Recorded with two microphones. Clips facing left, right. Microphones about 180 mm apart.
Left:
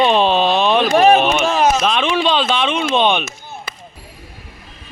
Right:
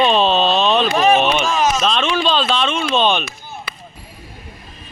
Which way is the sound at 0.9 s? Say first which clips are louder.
Left 5 dB; 60° left (ahead or behind).